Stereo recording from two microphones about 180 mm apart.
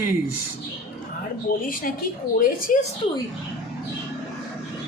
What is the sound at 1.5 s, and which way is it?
Speech, 50° left (ahead or behind).